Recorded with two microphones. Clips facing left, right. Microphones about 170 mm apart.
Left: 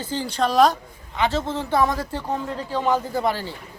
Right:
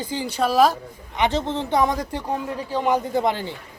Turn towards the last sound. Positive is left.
turn(degrees=-20)  # may be behind; listen again after turning